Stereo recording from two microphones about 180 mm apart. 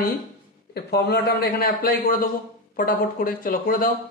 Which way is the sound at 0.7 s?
60° left (ahead or behind).